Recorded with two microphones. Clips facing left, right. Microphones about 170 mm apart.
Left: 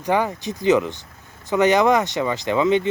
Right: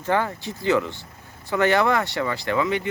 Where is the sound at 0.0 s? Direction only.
15° left (ahead or behind).